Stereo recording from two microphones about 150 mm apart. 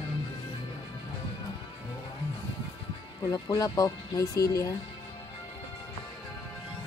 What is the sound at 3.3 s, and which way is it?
Speech, 20° left (ahead or behind).